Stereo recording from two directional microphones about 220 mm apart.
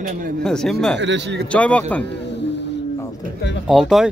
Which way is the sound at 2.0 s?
50° left (ahead or behind).